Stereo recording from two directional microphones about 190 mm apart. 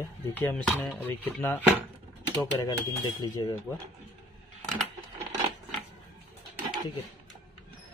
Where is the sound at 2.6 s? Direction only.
20° left (ahead or behind).